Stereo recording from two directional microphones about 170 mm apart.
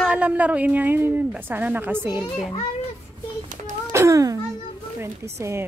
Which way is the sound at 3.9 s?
15° right (ahead or behind).